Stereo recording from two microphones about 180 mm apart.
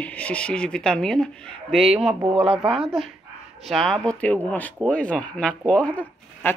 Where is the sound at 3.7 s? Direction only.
Centre (ahead or behind).